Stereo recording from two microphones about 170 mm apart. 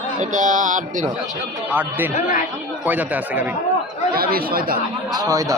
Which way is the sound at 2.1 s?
50° left (ahead or behind).